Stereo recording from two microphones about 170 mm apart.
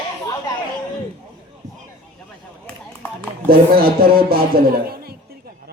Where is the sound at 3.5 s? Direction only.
60° right (ahead or behind).